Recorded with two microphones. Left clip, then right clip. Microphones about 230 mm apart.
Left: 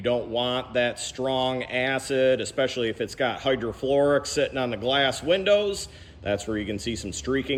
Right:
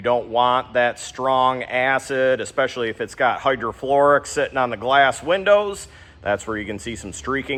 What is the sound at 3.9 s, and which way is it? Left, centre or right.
Speech, right.